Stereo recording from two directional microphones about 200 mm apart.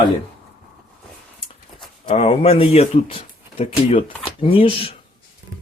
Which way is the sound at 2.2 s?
30° left (ahead or behind).